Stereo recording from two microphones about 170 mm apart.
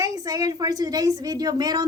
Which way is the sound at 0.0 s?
20° right (ahead or behind).